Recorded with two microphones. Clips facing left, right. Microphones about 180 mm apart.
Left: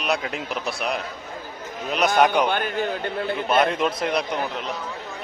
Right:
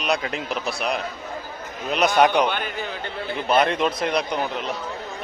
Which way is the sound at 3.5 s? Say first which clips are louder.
Right 2 dB; centre (ahead or behind).